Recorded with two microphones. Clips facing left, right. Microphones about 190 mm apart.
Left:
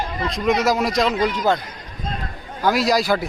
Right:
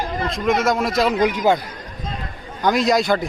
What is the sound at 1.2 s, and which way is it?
Speech, 15° right (ahead or behind).